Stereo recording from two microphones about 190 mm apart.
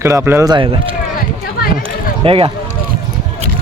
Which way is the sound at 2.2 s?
30° right (ahead or behind).